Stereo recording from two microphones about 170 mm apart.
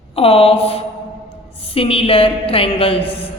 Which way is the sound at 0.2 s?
35° left (ahead or behind).